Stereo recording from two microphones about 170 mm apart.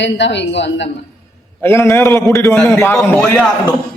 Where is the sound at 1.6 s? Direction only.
15° left (ahead or behind).